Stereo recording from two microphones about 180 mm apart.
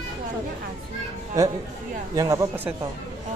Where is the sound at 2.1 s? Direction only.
20° right (ahead or behind).